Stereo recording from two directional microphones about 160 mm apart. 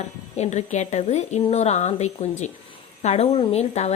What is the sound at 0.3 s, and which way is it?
A woman's voice, 45° left (ahead or behind).